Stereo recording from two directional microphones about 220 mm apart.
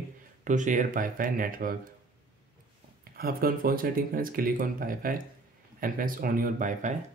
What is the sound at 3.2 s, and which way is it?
Speech, 40° right (ahead or behind).